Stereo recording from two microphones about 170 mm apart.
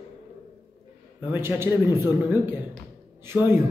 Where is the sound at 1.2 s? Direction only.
15° right (ahead or behind).